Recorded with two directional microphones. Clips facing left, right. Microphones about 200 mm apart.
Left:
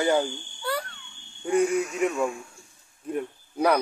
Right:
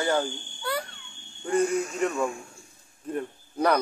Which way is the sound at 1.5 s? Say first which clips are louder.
Left 2 dB; 10° left (ahead or behind).